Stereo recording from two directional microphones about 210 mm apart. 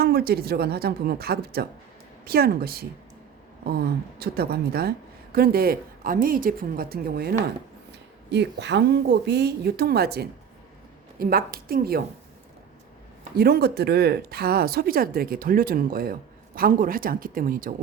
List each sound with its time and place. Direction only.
0.0 s a woman's voice: 45° right (ahead or behind)
13.3 s a woman's voice: 50° right (ahead or behind)